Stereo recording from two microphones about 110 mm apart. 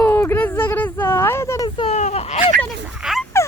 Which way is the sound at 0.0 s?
20° left (ahead or behind).